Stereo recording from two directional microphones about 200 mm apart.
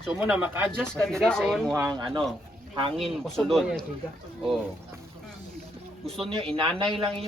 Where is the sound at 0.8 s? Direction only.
Centre (ahead or behind).